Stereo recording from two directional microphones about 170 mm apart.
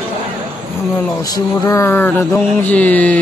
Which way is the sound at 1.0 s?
20° left (ahead or behind).